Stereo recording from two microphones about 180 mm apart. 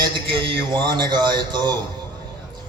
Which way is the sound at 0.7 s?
25° right (ahead or behind).